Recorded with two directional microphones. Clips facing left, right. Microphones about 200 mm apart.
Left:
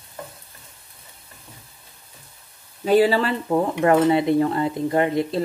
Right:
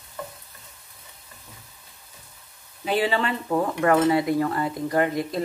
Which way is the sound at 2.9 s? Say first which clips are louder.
Left 7 dB; 40° left (ahead or behind).